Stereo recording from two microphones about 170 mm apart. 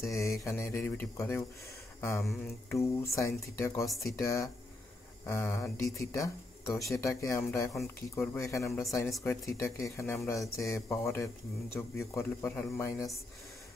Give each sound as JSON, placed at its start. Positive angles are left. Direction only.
{"t": 0.0, "sound": "speech", "side_deg": 20}
{"t": 2.2, "sound": "speech", "side_deg": 0}
{"t": 3.2, "sound": "speech", "side_deg": 15}
{"t": 3.8, "sound": "speech", "side_deg": 0}
{"t": 4.2, "sound": "speech", "side_deg": 20}